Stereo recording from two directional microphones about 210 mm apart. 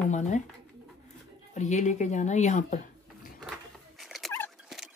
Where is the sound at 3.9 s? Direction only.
Centre (ahead or behind).